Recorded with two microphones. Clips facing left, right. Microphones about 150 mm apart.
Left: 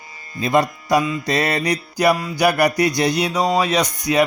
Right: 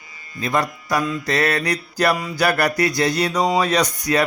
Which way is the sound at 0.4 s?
25° left (ahead or behind).